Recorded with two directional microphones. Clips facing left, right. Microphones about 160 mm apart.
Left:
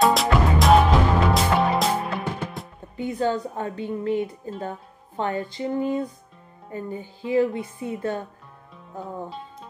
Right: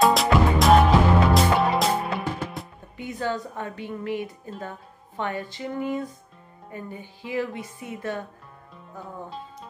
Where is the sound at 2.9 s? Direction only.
30° left (ahead or behind).